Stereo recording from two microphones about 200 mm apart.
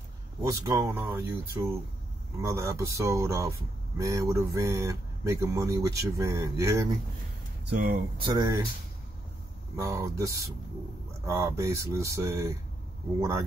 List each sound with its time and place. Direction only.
0.4 s speech: 15° right (ahead or behind)
7.7 s speech: 55° right (ahead or behind)
8.2 s speech: 20° right (ahead or behind)
9.8 s speech: 15° right (ahead or behind)